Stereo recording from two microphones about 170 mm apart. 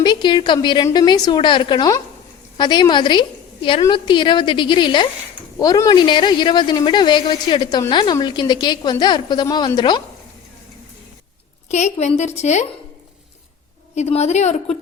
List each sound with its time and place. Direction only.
0.0 s speech: 25° left (ahead or behind)
11.7 s a woman's voice: 40° left (ahead or behind)
13.9 s a woman's voice: 40° left (ahead or behind)